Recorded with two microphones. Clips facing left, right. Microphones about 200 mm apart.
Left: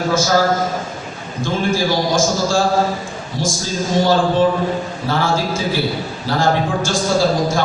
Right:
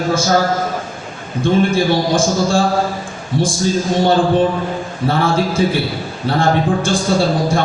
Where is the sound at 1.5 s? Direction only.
60° right (ahead or behind).